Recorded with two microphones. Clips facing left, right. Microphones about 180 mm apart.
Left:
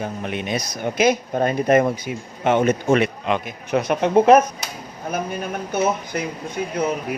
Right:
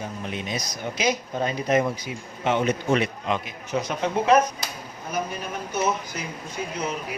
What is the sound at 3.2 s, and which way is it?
A man's voice, 60° left (ahead or behind).